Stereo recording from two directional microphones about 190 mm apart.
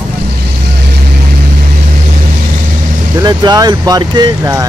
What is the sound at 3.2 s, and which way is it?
Speech, 20° right (ahead or behind).